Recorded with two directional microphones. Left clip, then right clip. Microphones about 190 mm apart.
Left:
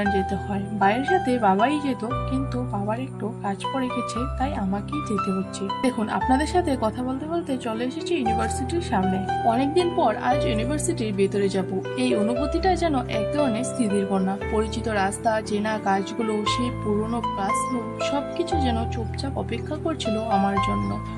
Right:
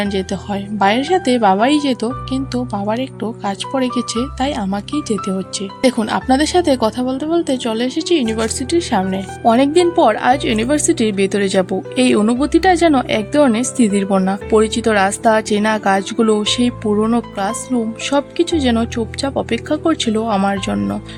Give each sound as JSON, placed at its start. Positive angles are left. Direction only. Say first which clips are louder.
{"t": 0.0, "sound": "speech", "louder": "right 3 dB", "side_deg": -30}